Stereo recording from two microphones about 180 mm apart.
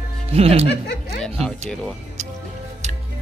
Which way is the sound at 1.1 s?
5° left (ahead or behind).